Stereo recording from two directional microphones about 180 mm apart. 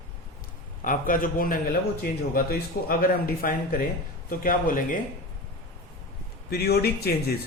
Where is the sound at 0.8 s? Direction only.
50° left (ahead or behind).